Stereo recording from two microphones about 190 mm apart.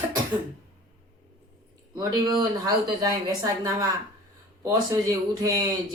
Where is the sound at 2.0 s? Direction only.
20° right (ahead or behind).